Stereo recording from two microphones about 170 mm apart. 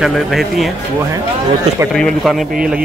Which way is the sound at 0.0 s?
Centre (ahead or behind).